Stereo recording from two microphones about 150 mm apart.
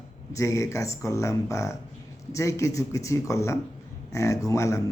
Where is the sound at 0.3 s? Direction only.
20° left (ahead or behind).